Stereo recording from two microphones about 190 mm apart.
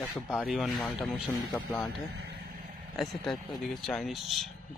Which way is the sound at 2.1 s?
55° right (ahead or behind).